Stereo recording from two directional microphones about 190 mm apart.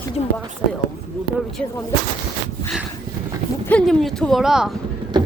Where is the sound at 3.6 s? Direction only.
5° left (ahead or behind).